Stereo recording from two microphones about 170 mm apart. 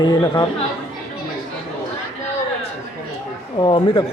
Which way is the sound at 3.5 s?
30° left (ahead or behind).